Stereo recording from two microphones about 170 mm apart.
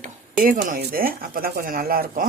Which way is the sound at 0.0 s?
50° right (ahead or behind).